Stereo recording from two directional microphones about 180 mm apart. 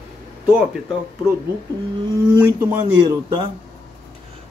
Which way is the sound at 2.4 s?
10° right (ahead or behind).